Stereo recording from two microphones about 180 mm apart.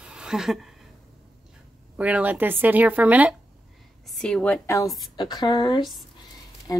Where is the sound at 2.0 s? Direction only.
10° right (ahead or behind).